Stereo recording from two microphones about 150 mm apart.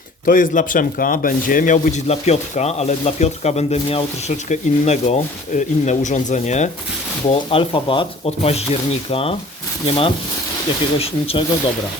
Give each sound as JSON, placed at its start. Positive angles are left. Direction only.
{"t": 0.3, "sound": "speech", "side_deg": 65}
{"t": 7.3, "sound": "speech", "side_deg": 35}